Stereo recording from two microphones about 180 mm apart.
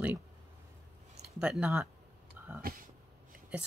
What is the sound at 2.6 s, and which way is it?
Speech, 55° right (ahead or behind).